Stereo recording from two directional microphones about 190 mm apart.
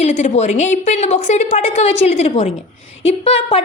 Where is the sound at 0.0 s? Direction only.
40° left (ahead or behind).